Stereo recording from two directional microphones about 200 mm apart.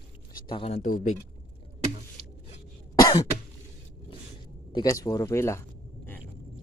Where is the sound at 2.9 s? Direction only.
20° left (ahead or behind).